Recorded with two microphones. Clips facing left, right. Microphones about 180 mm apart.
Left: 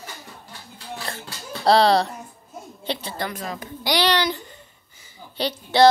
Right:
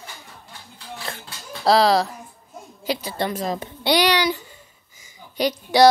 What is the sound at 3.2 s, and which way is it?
Speech, 30° right (ahead or behind).